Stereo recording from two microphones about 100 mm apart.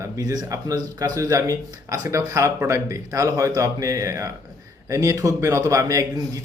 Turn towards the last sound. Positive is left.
turn(degrees=-35)  # may be behind; listen again after turning